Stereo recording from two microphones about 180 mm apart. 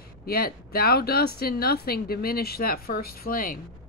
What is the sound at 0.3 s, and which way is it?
Speech, 55° left (ahead or behind).